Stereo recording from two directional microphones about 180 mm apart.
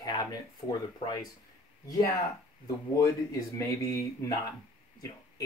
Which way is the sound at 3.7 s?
20° left (ahead or behind).